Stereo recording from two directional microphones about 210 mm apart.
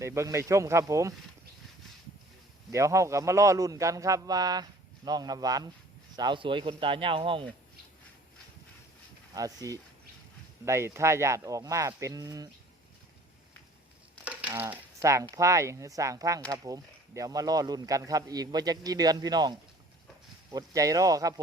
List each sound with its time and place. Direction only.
0.0 s speech: 15° right (ahead or behind)
2.7 s speech: 15° right (ahead or behind)
9.3 s speech: 15° right (ahead or behind)
14.3 s speech: 10° right (ahead or behind)